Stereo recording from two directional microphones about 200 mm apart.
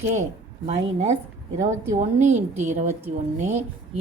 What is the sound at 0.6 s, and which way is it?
A woman's voice, 35° right (ahead or behind).